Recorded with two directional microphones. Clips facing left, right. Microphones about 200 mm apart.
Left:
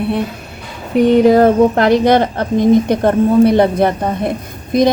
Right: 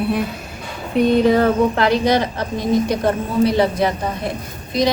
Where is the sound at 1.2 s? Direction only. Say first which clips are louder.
Left 6 dB; 45° left (ahead or behind).